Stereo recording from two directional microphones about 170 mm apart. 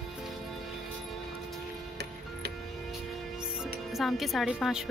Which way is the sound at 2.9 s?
5° right (ahead or behind).